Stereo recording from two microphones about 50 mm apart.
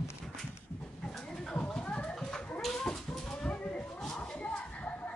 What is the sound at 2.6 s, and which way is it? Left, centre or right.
Dog, centre.